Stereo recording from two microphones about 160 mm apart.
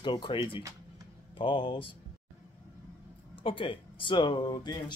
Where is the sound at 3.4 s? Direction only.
35° left (ahead or behind).